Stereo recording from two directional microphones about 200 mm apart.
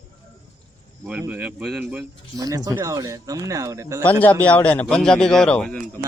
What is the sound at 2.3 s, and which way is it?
Speech, 15° right (ahead or behind).